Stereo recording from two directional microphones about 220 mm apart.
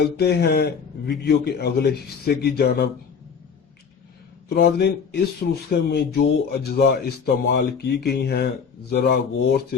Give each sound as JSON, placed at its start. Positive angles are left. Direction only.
{"t": 0.0, "sound": "speech", "side_deg": 45}
{"t": 4.4, "sound": "speech", "side_deg": 45}